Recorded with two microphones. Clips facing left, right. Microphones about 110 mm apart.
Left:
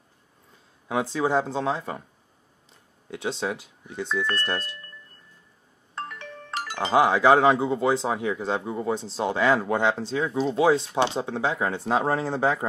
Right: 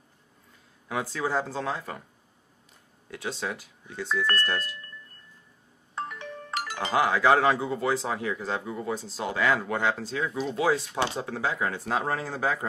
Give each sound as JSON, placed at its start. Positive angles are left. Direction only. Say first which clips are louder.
{"t": 0.8, "sound": "speech", "louder": "left 5 dB", "side_deg": 20}
{"t": 3.1, "sound": "speech", "louder": "left 4 dB", "side_deg": 20}
{"t": 5.9, "sound": "music", "louder": "right 1 dB", "side_deg": -5}
{"t": 6.7, "sound": "speech", "louder": "left 5 dB", "side_deg": 25}